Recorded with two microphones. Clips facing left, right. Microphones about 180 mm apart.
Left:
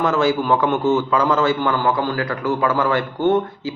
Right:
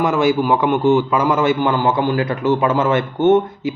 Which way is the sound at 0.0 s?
15° right (ahead or behind).